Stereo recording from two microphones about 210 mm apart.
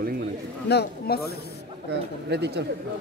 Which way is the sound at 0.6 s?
50° left (ahead or behind).